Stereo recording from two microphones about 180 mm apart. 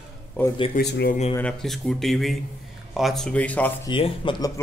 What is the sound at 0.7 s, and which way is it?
Speech, 55° left (ahead or behind).